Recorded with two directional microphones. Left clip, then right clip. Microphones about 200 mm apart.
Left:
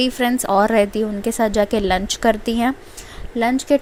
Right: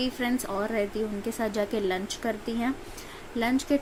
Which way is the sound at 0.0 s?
40° left (ahead or behind).